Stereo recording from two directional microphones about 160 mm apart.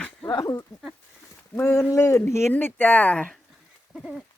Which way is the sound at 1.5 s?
15° left (ahead or behind).